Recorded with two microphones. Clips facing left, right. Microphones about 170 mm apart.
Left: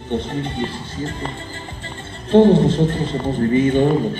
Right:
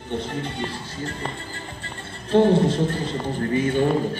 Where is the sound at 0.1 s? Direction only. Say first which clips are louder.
Left 5 dB; 25° left (ahead or behind).